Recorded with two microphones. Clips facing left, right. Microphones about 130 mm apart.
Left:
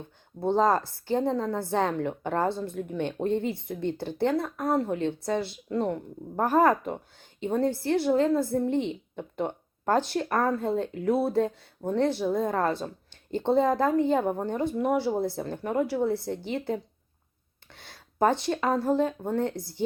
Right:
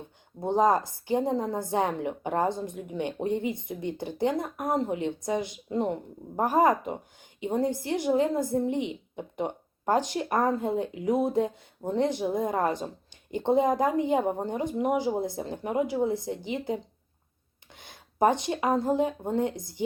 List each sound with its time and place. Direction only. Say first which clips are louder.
0.4 s a woman's voice: even; 15° right (ahead or behind)